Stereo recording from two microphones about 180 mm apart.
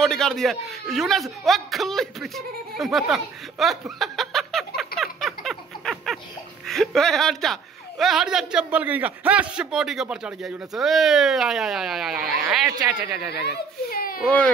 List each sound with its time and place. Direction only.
0.0 s a man's voice: centre (ahead or behind)
12.6 s speech: 20° right (ahead or behind)
13.5 s a child's voice: 55° left (ahead or behind)